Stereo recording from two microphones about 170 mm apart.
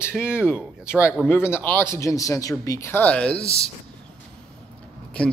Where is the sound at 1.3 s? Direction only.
15° left (ahead or behind).